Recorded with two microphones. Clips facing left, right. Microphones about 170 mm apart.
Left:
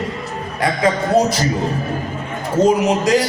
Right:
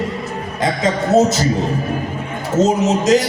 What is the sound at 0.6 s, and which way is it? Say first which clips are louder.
Speech: left 1 dB; 25° right (ahead or behind).